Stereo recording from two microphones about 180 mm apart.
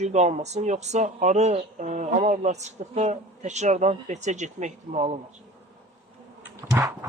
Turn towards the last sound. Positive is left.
turn(degrees=-15)  # may be behind; listen again after turning